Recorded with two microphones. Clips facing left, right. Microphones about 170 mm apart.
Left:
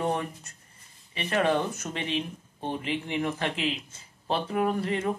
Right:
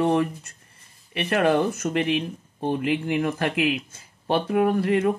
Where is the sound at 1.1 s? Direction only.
70° right (ahead or behind).